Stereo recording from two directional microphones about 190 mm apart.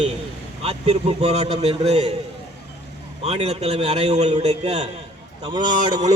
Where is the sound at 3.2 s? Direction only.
35° right (ahead or behind).